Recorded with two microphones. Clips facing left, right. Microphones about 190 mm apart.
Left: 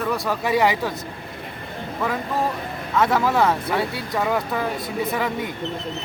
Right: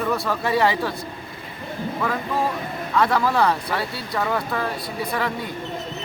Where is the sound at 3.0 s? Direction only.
20° left (ahead or behind).